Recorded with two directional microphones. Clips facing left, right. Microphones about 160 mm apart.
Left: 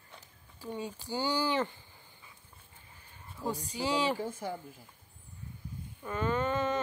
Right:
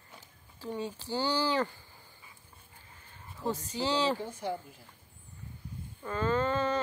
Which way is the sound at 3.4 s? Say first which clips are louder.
Right 1 dB; 15° left (ahead or behind).